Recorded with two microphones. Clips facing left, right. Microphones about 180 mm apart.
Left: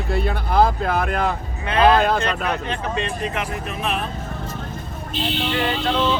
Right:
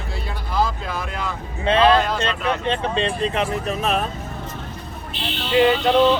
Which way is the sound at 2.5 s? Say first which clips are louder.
Right 3 dB; 25° right (ahead or behind).